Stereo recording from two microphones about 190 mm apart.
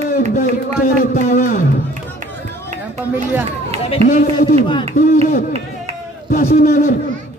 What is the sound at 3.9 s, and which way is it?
Speech, 35° left (ahead or behind).